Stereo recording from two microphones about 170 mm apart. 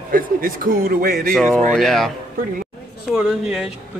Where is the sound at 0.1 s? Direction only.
55° right (ahead or behind).